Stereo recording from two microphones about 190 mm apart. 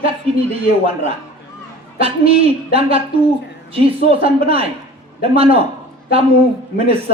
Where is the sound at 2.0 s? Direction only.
30° right (ahead or behind).